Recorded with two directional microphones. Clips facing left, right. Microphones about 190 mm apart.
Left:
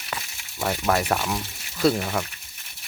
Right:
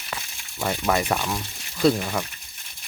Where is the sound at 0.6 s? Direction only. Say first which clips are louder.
Even; centre (ahead or behind).